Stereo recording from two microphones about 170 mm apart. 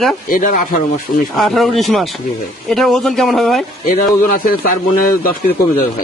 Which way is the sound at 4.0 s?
55° left (ahead or behind).